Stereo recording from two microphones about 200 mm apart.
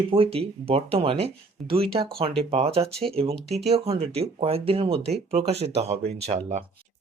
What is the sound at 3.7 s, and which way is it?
Speech, 30° right (ahead or behind).